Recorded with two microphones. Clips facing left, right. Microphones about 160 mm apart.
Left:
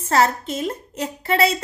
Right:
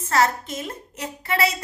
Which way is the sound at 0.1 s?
30° left (ahead or behind).